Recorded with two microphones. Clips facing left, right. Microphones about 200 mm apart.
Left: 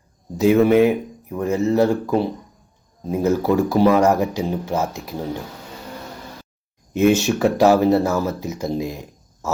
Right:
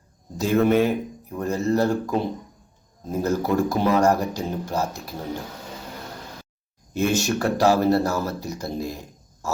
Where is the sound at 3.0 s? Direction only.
10° left (ahead or behind).